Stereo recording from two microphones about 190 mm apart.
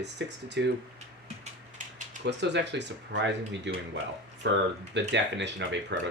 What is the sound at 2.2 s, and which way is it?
Speech, 65° right (ahead or behind).